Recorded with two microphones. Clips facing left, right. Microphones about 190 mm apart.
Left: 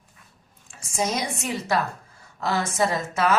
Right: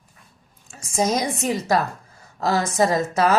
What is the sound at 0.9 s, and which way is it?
Speech, 40° right (ahead or behind).